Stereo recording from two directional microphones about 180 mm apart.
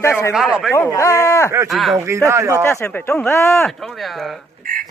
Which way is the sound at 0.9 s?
15° left (ahead or behind).